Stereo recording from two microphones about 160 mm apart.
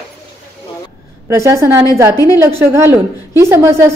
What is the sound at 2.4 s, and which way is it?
A woman's voice, 15° right (ahead or behind).